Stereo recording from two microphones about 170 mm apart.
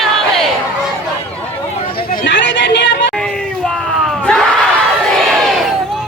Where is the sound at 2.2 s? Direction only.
90° left.